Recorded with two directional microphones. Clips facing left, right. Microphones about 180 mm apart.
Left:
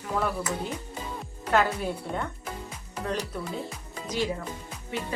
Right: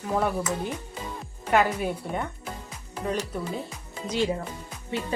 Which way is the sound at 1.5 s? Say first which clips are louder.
Right 2 dB; 15° right (ahead or behind).